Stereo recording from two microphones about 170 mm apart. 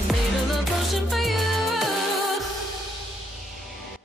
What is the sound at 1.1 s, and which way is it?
Music, centre (ahead or behind).